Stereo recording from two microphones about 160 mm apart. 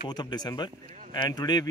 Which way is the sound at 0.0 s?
25° left (ahead or behind).